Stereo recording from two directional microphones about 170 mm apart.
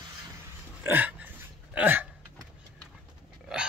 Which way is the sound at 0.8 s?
10° right (ahead or behind).